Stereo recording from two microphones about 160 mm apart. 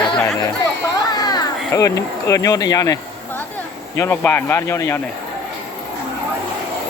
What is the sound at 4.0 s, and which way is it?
Speech, 15° left (ahead or behind).